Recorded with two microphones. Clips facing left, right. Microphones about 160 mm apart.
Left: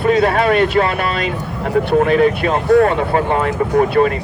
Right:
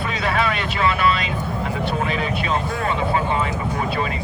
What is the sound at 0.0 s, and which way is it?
Speech, 50° left (ahead or behind).